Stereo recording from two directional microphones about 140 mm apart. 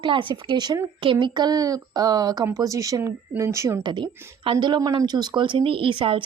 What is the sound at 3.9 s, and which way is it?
Speech, 35° right (ahead or behind).